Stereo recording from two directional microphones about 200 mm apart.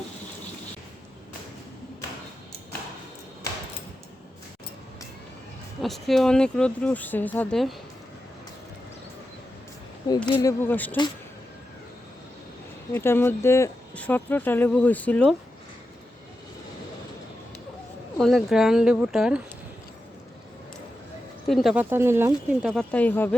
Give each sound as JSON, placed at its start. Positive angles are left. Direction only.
{"t": 5.8, "sound": "speech", "side_deg": 0}
{"t": 10.2, "sound": "speech", "side_deg": 10}
{"t": 12.9, "sound": "speech", "side_deg": 10}
{"t": 18.2, "sound": "speech", "side_deg": 0}
{"t": 21.4, "sound": "speech", "side_deg": 0}